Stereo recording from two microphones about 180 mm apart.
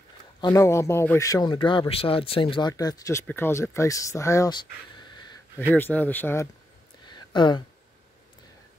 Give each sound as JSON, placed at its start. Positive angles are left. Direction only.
{"t": 0.4, "sound": "speech", "side_deg": 15}
{"t": 5.7, "sound": "speech", "side_deg": 10}
{"t": 7.1, "sound": "a sound", "side_deg": 25}